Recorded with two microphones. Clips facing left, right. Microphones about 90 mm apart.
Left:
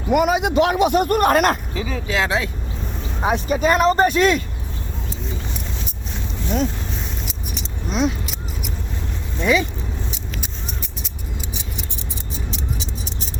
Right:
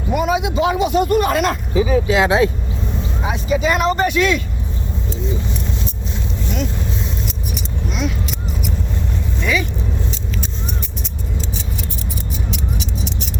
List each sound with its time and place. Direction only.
0.1 s speech: 65° left (ahead or behind)
1.7 s speech: 10° right (ahead or behind)
3.2 s speech: 50° left (ahead or behind)
7.9 s speech: 30° left (ahead or behind)
9.4 s speech: 25° left (ahead or behind)
12.5 s a sound: 35° left (ahead or behind)